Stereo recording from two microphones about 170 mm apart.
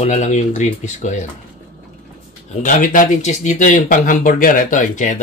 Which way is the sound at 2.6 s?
50° left (ahead or behind).